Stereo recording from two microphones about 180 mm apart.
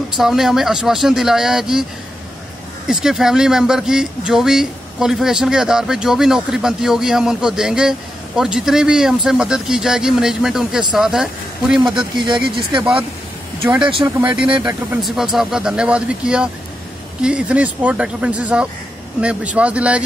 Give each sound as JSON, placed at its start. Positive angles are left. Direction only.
{"t": 0.2, "sound": "speech", "side_deg": 0}
{"t": 2.9, "sound": "speech", "side_deg": 0}
{"t": 11.9, "sound": "speech", "side_deg": -25}
{"t": 14.0, "sound": "speech", "side_deg": -5}